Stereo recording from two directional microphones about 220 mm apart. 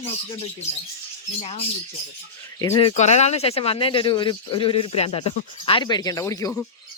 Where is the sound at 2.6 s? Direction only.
20° left (ahead or behind).